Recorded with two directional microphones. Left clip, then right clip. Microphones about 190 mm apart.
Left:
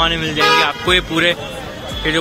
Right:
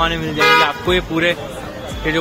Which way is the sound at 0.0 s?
10° right (ahead or behind).